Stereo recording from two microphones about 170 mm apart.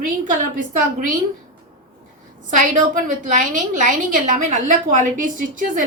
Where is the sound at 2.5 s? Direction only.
50° right (ahead or behind).